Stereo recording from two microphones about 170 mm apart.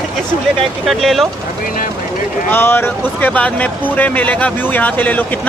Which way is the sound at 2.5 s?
15° left (ahead or behind).